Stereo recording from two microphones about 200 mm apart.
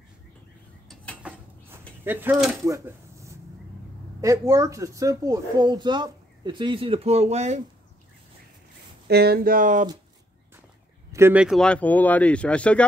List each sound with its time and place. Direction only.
1.2 s a sound: 5° right (ahead or behind)
2.0 s speech: 10° right (ahead or behind); by 7.6 s 35° right (ahead or behind)
9.0 s speech: 55° right (ahead or behind)
11.1 s speech: 15° right (ahead or behind); by 12.8 s 5° left (ahead or behind)